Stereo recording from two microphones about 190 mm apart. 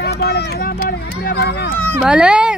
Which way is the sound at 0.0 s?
55° left (ahead or behind).